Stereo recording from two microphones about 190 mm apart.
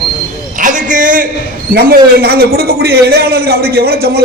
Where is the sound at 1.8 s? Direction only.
55° right (ahead or behind).